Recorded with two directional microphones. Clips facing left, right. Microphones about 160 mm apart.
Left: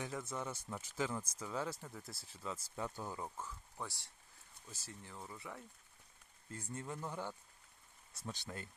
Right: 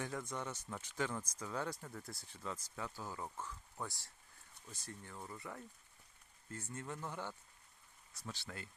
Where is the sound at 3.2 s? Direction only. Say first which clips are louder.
Even; 10° left (ahead or behind).